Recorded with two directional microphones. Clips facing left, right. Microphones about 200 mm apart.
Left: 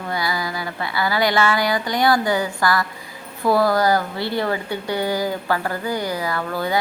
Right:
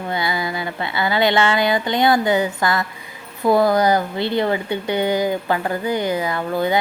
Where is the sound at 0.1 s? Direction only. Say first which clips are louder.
Right 1 dB; 25° right (ahead or behind).